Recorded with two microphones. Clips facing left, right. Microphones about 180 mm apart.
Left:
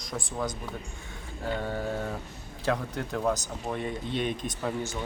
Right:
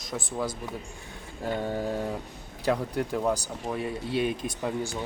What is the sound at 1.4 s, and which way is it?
Speech, 15° right (ahead or behind).